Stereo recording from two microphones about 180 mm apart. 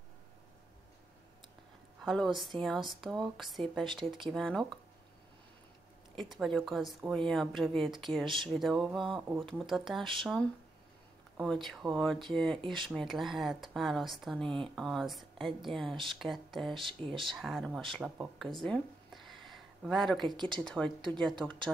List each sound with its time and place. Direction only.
2.0 s a woman's voice: centre (ahead or behind)
6.1 s speech: centre (ahead or behind)
18.1 s a sound: centre (ahead or behind)
20.3 s speech: 25° right (ahead or behind)
20.6 s speech: 5° left (ahead or behind)